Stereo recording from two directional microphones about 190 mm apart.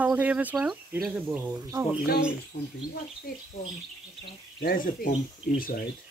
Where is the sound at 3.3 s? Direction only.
55° left (ahead or behind).